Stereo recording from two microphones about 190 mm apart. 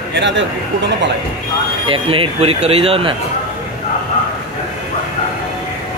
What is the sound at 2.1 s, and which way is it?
Speech, 30° right (ahead or behind).